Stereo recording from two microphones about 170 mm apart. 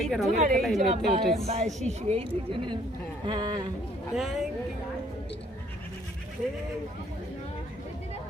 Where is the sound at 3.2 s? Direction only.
25° right (ahead or behind).